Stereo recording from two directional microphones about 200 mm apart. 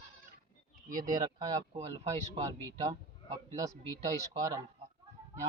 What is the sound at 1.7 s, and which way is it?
Speech, 25° right (ahead or behind).